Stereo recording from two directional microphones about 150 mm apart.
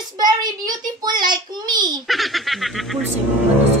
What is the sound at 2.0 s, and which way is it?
Speech, centre (ahead or behind).